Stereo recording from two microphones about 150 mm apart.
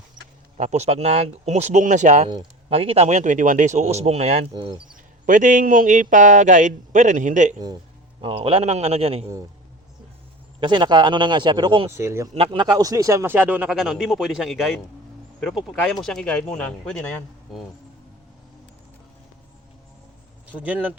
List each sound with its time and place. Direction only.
0.5 s speech: 50° right (ahead or behind)
2.3 s speech: 40° right (ahead or behind)
5.2 s a man's voice: 60° right (ahead or behind)
8.2 s speech: 35° right (ahead or behind)
10.6 s speech: 30° right (ahead or behind)
11.9 s speech: 20° right (ahead or behind)
12.3 s speech: 40° right (ahead or behind); by 17.6 s 5° left (ahead or behind)
20.5 s speech: 10° right (ahead or behind)